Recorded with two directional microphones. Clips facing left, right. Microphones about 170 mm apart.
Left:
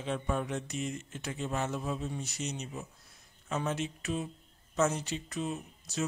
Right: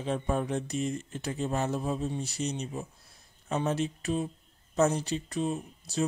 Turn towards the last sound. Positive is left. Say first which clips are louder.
# right 5 dB
turn(degrees=-35)  # may be behind; listen again after turning